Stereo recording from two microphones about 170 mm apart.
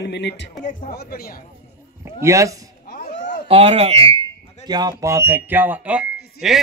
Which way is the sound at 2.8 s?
60° left (ahead or behind).